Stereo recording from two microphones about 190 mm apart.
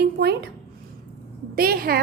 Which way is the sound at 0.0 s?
60° right (ahead or behind).